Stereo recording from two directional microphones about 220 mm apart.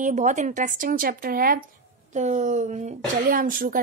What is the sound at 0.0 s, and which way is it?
Speech, 35° right (ahead or behind).